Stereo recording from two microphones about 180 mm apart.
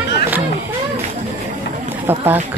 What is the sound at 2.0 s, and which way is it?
Speech, 10° right (ahead or behind).